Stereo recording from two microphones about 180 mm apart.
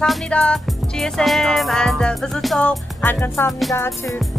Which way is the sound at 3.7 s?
15° left (ahead or behind).